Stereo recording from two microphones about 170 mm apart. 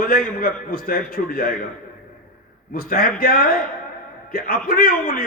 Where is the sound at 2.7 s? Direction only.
60° left (ahead or behind).